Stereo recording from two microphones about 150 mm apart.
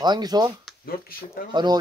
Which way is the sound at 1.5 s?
30° right (ahead or behind).